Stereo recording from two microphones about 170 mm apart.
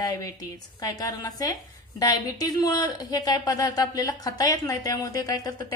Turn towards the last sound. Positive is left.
turn(degrees=20)  # may be behind; listen again after turning